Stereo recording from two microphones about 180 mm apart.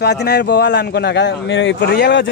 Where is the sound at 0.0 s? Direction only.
65° left (ahead or behind).